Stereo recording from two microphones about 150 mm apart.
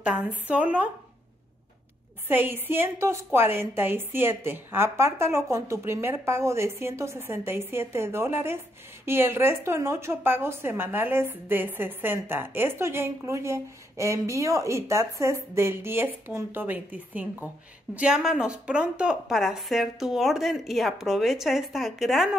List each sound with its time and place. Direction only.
0.0 s a woman's voice: 10° right (ahead or behind)
2.2 s a woman's voice: 15° right (ahead or behind)